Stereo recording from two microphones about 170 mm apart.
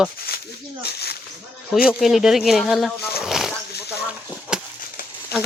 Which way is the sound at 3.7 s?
70° left (ahead or behind).